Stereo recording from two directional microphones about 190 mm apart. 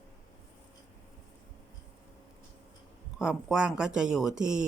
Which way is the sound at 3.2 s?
5° right (ahead or behind).